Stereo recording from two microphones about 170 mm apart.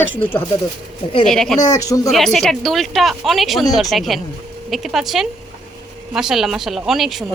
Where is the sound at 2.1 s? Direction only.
Centre (ahead or behind).